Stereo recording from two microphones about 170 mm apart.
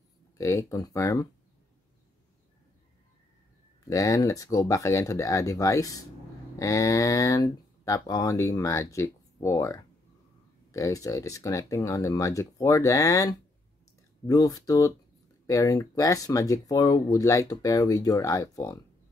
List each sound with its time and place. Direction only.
0.4 s speech: 15° left (ahead or behind)
3.8 s speech: 20° left (ahead or behind)